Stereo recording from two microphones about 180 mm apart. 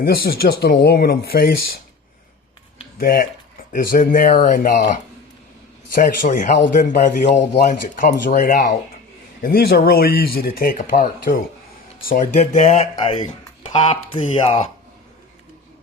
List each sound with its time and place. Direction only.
0.0 s speech: 55° left (ahead or behind)
3.0 s speech: 50° left (ahead or behind)
6.0 s speech: 45° left (ahead or behind)
9.4 s speech: 55° left (ahead or behind); by 14.7 s 30° left (ahead or behind)